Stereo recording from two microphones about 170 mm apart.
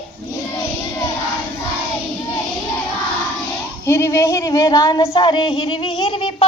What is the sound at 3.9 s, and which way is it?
A woman's voice, 15° left (ahead or behind).